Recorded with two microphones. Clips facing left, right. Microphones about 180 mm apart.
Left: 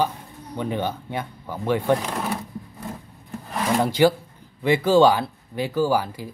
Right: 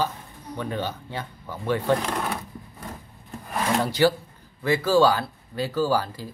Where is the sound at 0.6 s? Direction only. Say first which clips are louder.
Left 4 dB; 15° left (ahead or behind).